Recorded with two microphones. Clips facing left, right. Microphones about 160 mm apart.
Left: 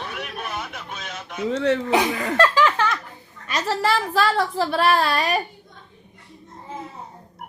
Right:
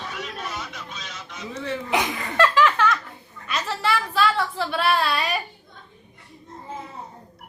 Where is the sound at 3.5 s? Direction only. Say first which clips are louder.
Left 3 dB; 40° left (ahead or behind).